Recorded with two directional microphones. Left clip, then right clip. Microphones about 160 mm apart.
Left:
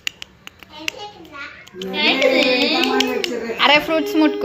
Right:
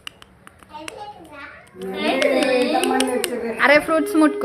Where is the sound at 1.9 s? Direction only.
15° right (ahead or behind).